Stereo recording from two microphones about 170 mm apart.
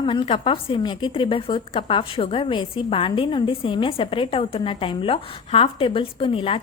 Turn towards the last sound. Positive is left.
turn(degrees=30)  # may be behind; listen again after turning